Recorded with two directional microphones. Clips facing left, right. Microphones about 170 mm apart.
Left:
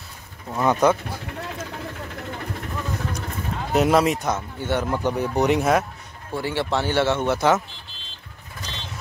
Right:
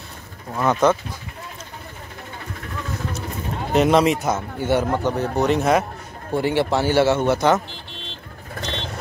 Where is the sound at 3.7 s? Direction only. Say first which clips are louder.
Right 2 dB; 5° left (ahead or behind).